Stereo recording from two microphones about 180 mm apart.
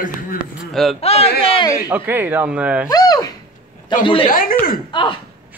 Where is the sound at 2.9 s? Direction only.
20° left (ahead or behind).